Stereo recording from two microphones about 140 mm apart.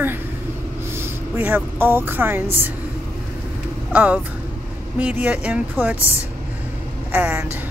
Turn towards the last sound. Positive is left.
turn(degrees=-10)  # may be behind; listen again after turning